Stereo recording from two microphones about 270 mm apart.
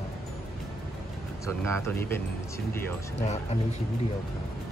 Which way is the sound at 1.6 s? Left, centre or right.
Centre.